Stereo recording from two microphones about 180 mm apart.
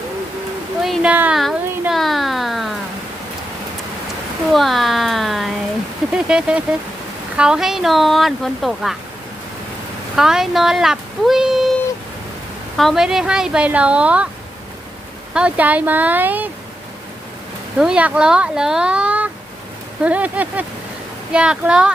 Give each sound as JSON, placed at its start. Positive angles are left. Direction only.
{"t": 0.8, "sound": "a sound", "side_deg": -5}
{"t": 4.5, "sound": "a sound", "side_deg": 0}
{"t": 6.2, "sound": "speech", "side_deg": -5}
{"t": 10.2, "sound": "speech", "side_deg": 0}
{"t": 12.7, "sound": "speech", "side_deg": 0}
{"t": 15.3, "sound": "speech", "side_deg": -5}
{"t": 17.7, "sound": "speech", "side_deg": -5}